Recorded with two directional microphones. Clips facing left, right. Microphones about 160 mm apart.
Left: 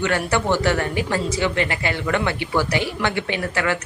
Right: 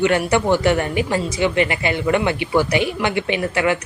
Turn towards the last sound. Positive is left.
turn(degrees=-15)  # may be behind; listen again after turning